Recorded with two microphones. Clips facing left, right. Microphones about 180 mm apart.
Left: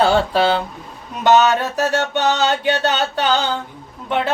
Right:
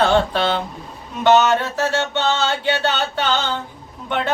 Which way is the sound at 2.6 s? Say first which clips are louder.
Left 2 dB; 40° left (ahead or behind).